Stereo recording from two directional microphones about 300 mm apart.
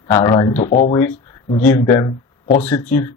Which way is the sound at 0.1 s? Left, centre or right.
Centre.